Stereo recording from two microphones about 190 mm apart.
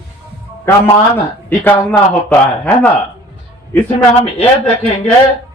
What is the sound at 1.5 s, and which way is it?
A man's voice, 10° left (ahead or behind).